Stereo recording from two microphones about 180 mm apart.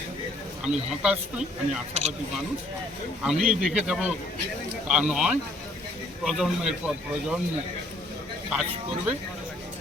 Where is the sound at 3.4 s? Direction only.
5° right (ahead or behind).